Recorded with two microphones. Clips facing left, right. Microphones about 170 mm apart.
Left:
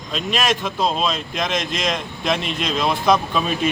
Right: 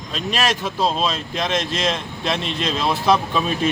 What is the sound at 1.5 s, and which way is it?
Speech, 30° right (ahead or behind).